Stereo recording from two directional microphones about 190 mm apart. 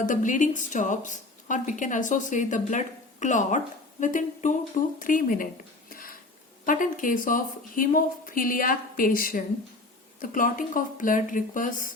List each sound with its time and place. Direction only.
0.0 s a woman's voice: 45° left (ahead or behind)
5.9 s a sound: 45° left (ahead or behind)
6.7 s a woman's voice: 45° left (ahead or behind)